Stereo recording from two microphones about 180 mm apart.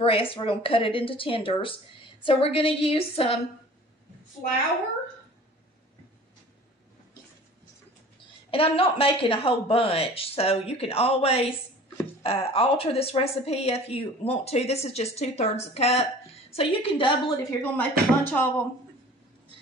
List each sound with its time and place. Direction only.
0.0 s speech: 30° left (ahead or behind)
8.5 s speech: 30° left (ahead or behind)
17.5 s speech: 10° left (ahead or behind)